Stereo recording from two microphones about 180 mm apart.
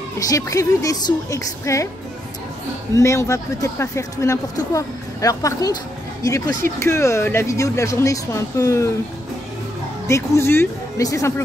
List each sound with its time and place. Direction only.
0.2 s a woman's voice: 20° left (ahead or behind)
3.0 s speech: 15° left (ahead or behind)
10.0 s speech: 15° left (ahead or behind)